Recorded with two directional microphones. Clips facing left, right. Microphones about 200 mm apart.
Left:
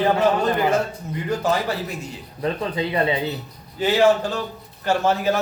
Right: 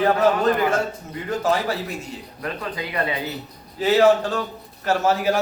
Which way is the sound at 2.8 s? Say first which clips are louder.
Left 5 dB; 25° left (ahead or behind).